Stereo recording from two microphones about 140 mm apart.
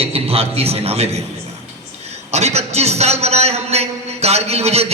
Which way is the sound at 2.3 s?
50° right (ahead or behind).